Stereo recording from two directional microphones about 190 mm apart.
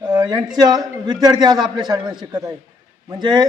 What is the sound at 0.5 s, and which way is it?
Speech, 20° right (ahead or behind).